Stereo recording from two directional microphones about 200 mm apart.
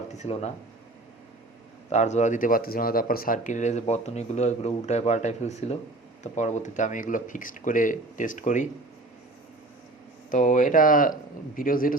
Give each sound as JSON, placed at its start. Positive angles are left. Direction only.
{"t": 0.1, "sound": "speech", "side_deg": 35}
{"t": 1.9, "sound": "speech", "side_deg": 35}
{"t": 10.3, "sound": "speech", "side_deg": 40}